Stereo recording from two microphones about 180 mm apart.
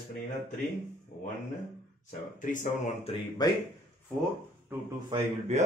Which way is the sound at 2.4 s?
45° left (ahead or behind).